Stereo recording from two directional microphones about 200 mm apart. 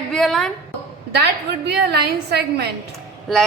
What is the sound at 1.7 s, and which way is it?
Speech, 55° right (ahead or behind).